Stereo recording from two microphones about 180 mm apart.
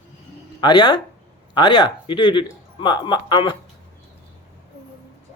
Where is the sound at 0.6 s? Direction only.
25° left (ahead or behind).